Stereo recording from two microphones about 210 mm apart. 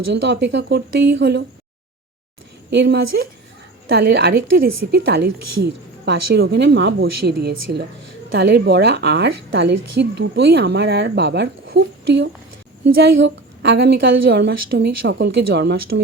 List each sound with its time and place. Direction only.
0.1 s speech: 55° right (ahead or behind)
2.6 s a woman's voice: 55° right (ahead or behind)